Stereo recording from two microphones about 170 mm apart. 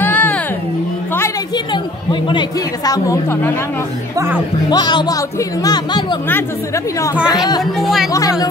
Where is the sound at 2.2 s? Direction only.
25° left (ahead or behind).